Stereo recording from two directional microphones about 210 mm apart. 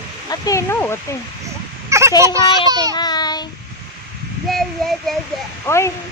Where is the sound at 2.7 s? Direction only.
20° right (ahead or behind).